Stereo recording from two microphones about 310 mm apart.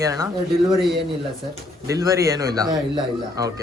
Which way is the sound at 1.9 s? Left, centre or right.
Centre.